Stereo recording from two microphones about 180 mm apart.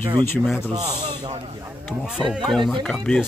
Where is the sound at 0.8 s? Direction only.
35° right (ahead or behind).